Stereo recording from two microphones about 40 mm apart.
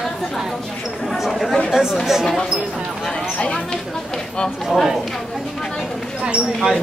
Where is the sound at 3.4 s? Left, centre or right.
Left.